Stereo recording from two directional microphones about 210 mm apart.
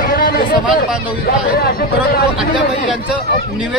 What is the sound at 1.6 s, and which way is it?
Speech, 45° left (ahead or behind).